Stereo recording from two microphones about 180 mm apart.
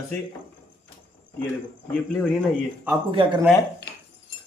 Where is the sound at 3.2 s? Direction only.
30° right (ahead or behind).